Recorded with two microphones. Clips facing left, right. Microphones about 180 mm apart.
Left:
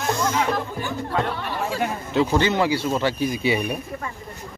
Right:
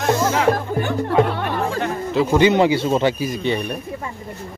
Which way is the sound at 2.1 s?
5° right (ahead or behind).